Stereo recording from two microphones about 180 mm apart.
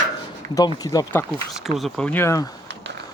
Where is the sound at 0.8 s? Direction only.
20° left (ahead or behind).